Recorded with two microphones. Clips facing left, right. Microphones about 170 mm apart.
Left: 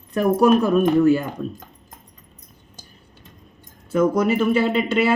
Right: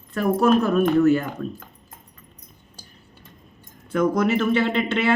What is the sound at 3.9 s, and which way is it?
Speech, 5° left (ahead or behind).